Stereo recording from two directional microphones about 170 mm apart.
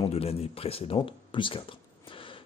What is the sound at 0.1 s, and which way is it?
Speech, 35° left (ahead or behind).